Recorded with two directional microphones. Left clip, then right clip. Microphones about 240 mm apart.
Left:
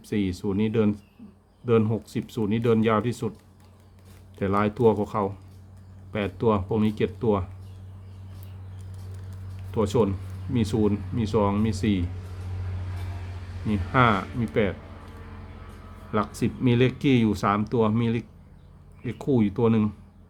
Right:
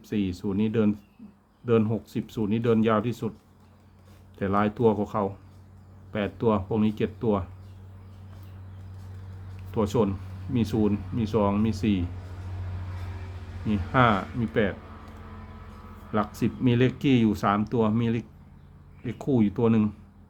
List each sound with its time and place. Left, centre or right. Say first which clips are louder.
0.0 s speech: left 2 dB; centre
4.4 s speech: left 1 dB; centre
9.7 s speech: left 2 dB; centre
13.7 s speech: left 1 dB; centre
16.1 s speech: left 1 dB; centre